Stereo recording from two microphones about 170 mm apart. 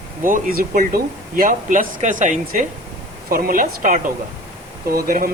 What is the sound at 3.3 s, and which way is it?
Speech, 55° right (ahead or behind).